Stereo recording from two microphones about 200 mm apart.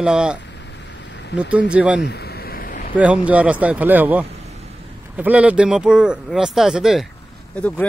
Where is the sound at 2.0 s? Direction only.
55° left (ahead or behind).